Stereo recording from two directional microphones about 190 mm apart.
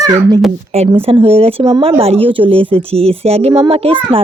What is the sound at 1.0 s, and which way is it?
A woman's voice, 30° right (ahead or behind).